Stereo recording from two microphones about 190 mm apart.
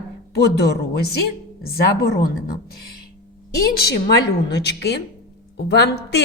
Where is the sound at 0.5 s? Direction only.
60° left (ahead or behind).